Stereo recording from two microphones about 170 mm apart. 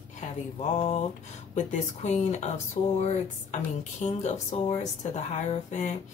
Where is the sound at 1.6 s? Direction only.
45° left (ahead or behind).